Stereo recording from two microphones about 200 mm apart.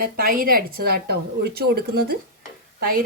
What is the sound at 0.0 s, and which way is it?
Speech, 45° right (ahead or behind).